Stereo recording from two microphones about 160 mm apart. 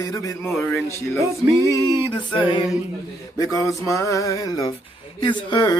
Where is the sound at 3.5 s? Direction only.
20° left (ahead or behind).